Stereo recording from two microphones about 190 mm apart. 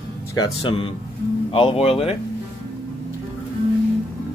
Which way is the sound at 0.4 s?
30° left (ahead or behind).